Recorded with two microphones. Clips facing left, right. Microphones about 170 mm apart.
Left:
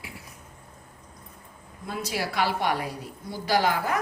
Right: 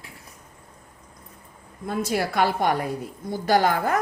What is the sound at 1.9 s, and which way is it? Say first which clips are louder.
A woman's voice: right 6 dB; 50° right (ahead or behind).